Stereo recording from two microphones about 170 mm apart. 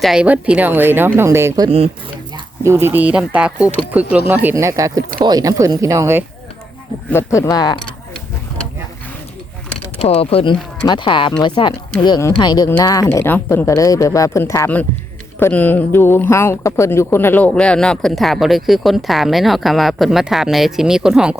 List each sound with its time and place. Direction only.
0.0 s a woman's voice: 5° right (ahead or behind)
7.1 s speech: 15° left (ahead or behind)
10.0 s speech: 35° left (ahead or behind); by 21.3 s 5° right (ahead or behind)